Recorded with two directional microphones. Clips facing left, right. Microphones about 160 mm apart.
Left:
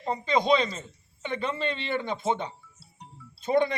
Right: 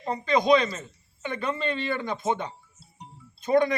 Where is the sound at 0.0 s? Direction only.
25° left (ahead or behind).